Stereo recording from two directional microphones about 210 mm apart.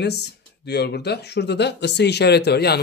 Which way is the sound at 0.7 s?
50° left (ahead or behind).